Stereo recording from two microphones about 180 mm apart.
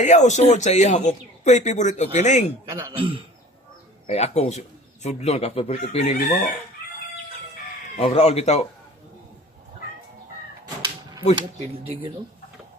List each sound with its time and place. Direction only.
0.0 s speech: 40° left (ahead or behind)
2.9 s speech: 30° right (ahead or behind)
4.0 s speech: 35° left (ahead or behind)
7.9 s speech: 35° left (ahead or behind)
11.3 s speech: 30° right (ahead or behind)